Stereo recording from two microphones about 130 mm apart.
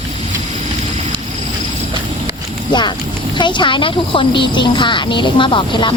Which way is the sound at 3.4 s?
35° left (ahead or behind).